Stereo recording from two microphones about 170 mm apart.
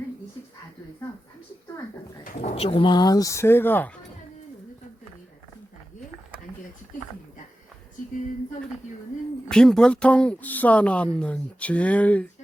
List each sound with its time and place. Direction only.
2.4 s speech: 35° left (ahead or behind); by 4.0 s 10° left (ahead or behind)
9.5 s speech: 5° left (ahead or behind)